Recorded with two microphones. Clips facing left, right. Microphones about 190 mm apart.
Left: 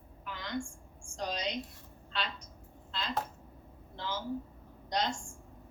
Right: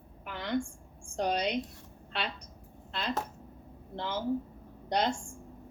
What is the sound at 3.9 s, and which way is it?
A woman's voice, 60° right (ahead or behind).